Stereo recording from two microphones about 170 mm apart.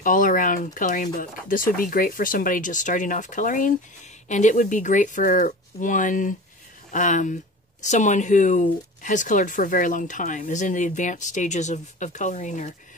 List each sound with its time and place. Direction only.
0.0 s speech: 50° left (ahead or behind)